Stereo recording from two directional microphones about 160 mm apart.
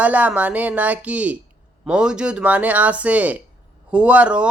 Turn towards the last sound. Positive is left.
turn(degrees=-5)  # may be behind; listen again after turning